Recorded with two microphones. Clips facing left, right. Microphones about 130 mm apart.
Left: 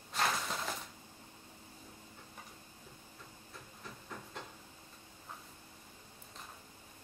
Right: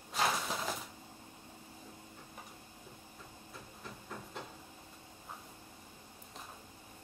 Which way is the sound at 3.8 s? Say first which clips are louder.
Right 1 dB; 5° right (ahead or behind).